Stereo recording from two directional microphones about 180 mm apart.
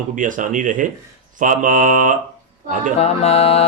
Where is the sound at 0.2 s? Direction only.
45° right (ahead or behind).